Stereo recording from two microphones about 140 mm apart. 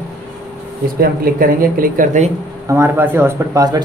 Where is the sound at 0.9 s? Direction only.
90° right.